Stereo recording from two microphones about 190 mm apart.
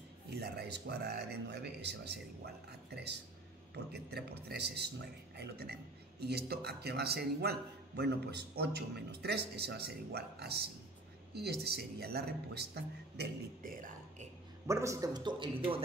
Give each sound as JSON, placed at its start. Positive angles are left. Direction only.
{"t": 0.3, "sound": "speech", "side_deg": -60}
{"t": 14.7, "sound": "a man's voice", "side_deg": -15}